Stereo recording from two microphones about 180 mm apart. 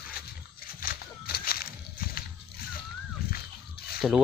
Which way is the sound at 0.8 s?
55° left (ahead or behind).